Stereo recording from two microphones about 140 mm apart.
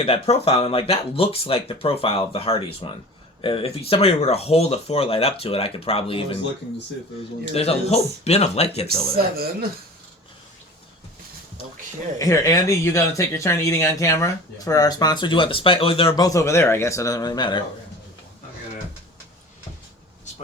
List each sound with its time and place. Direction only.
0.0 s speech: 45° left (ahead or behind)
7.5 s speech: 45° left (ahead or behind)
9.1 s speech: 90° right
12.2 s speech: 25° left (ahead or behind); by 16.1 s 40° left (ahead or behind)
16.1 s speech: 25° left (ahead or behind)